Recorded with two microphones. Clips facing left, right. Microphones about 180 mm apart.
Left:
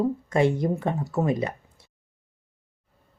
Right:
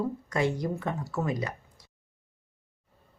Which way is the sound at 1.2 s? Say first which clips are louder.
Left 6 dB; 25° left (ahead or behind).